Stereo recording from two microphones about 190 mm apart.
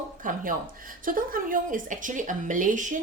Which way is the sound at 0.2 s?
45° right (ahead or behind).